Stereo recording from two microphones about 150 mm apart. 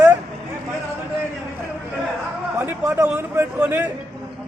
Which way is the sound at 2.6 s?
15° right (ahead or behind).